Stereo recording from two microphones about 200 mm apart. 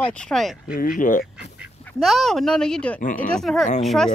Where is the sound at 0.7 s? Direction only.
45° left (ahead or behind).